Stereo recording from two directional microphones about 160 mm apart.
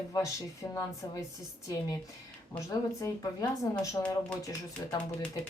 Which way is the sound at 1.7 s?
20° left (ahead or behind).